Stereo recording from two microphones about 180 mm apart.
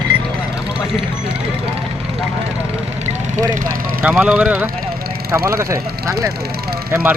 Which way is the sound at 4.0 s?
5° right (ahead or behind).